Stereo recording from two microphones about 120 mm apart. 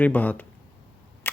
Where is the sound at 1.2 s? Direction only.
15° left (ahead or behind).